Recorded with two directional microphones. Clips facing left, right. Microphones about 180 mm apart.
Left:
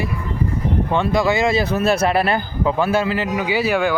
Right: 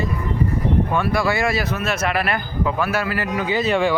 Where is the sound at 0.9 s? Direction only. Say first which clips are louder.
Left 3 dB; 20° left (ahead or behind).